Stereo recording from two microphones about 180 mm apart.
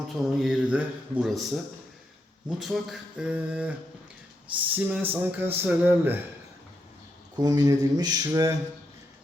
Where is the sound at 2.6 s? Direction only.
Centre (ahead or behind).